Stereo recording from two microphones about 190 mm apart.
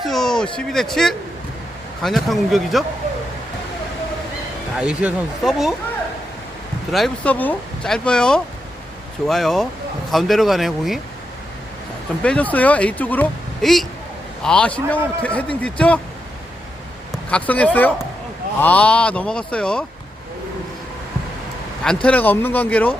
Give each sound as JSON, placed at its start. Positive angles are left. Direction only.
{"t": 0.0, "sound": "speech", "side_deg": 0}
{"t": 4.8, "sound": "speech", "side_deg": -5}
{"t": 6.9, "sound": "speech", "side_deg": 5}
{"t": 12.2, "sound": "speech", "side_deg": 5}
{"t": 17.1, "sound": "speech", "side_deg": 5}
{"t": 22.0, "sound": "speech", "side_deg": 10}